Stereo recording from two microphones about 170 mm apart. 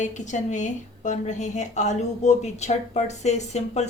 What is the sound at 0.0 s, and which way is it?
A woman's voice, 45° left (ahead or behind).